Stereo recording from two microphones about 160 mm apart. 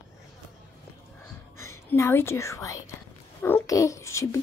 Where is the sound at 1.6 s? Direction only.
20° left (ahead or behind).